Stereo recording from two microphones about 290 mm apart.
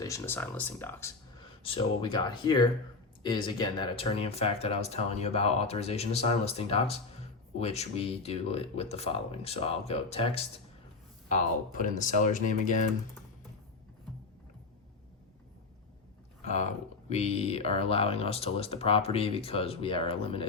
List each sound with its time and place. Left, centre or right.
0.0 s speech: centre; by 12.7 s left
16.4 s speech: left